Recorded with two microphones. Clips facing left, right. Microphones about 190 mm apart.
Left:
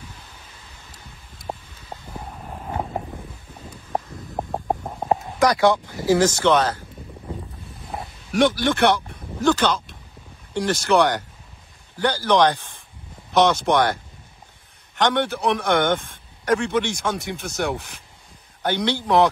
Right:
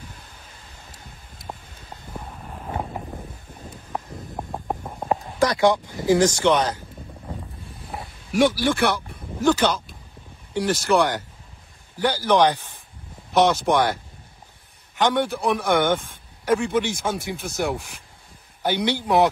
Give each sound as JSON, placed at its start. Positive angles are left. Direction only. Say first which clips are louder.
{"t": 4.6, "sound": "a sound", "louder": "left 2 dB", "side_deg": 25}
{"t": 5.4, "sound": "speech", "louder": "left 1 dB", "side_deg": -20}
{"t": 8.3, "sound": "speech", "louder": "even", "side_deg": 0}
{"t": 15.0, "sound": "speech", "louder": "even", "side_deg": 0}